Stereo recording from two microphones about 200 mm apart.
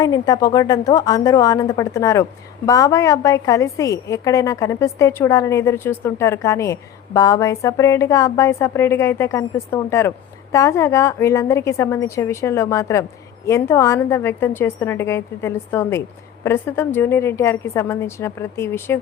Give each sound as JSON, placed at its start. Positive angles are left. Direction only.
{"t": 0.0, "sound": "a woman's voice", "side_deg": 20}